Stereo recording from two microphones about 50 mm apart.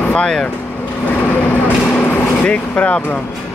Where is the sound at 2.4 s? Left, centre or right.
Left.